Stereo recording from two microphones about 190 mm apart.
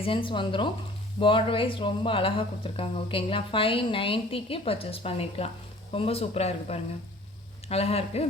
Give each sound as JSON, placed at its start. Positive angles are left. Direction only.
{"t": 0.0, "sound": "speech", "side_deg": 25}